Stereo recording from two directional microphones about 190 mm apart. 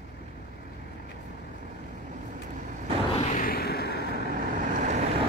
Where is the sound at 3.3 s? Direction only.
50° left (ahead or behind).